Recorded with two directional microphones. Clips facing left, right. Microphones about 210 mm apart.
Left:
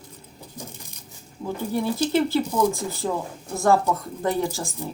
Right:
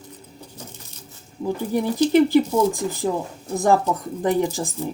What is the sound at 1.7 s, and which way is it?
Speech, 15° right (ahead or behind).